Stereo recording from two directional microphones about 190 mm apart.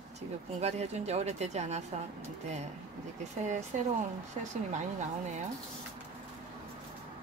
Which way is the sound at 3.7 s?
40° right (ahead or behind).